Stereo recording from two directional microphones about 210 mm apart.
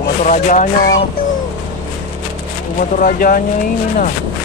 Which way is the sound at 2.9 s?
40° left (ahead or behind).